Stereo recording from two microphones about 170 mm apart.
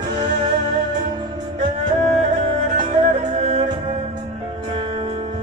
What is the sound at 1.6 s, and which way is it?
Music, 45° right (ahead or behind).